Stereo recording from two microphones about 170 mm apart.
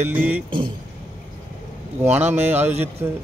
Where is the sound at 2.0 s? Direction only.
10° right (ahead or behind).